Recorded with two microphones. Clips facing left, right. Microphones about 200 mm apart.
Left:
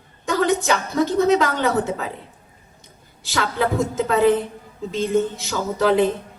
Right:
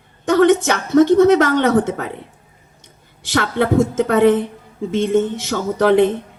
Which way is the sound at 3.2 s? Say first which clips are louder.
Right 4 dB; 70° right (ahead or behind).